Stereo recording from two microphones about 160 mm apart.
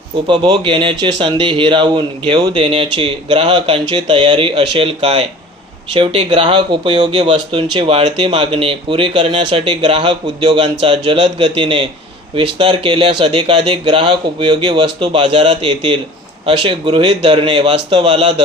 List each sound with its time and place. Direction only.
0.3 s speech: 30° right (ahead or behind)